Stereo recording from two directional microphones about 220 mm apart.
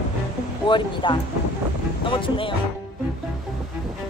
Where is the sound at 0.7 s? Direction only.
20° left (ahead or behind).